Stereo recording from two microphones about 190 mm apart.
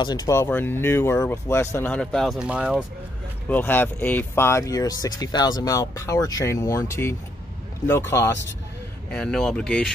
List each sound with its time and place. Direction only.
0.0 s speech: 20° left (ahead or behind); by 2.8 s 5° right (ahead or behind)
3.4 s speech: 10° left (ahead or behind)
9.1 s speech: 5° left (ahead or behind)